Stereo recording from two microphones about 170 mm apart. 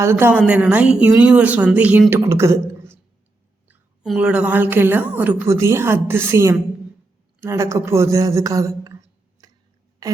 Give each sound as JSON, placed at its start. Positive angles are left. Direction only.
{"t": 0.0, "sound": "a woman's voice", "side_deg": -15}
{"t": 3.7, "sound": "a woman's voice", "side_deg": -5}